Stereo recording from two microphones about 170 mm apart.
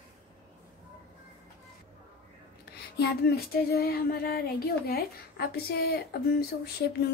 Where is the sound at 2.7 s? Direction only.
70° left (ahead or behind).